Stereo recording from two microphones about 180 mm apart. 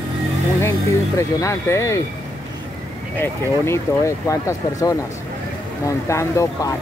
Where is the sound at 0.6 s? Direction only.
15° left (ahead or behind).